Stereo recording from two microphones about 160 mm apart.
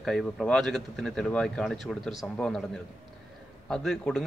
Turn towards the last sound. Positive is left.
turn(degrees=0)  # may be behind; listen again after turning